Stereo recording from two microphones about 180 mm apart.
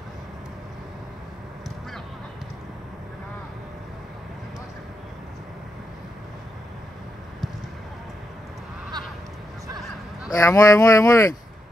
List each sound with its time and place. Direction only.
10.3 s speech: 15° left (ahead or behind)